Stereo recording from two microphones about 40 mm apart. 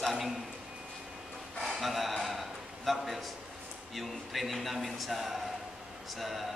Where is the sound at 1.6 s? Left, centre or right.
Centre.